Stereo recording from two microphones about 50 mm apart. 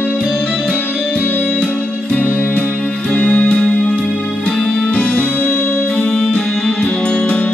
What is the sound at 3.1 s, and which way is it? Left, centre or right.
Music, left.